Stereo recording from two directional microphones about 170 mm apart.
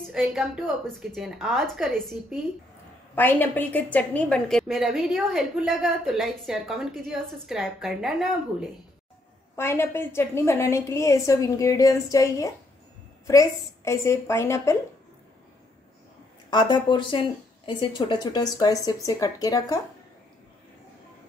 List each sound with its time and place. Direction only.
0.0 s a woman's voice: centre (ahead or behind)
9.6 s a woman's voice: 15° left (ahead or behind)
16.4 s a woman's voice: 25° left (ahead or behind)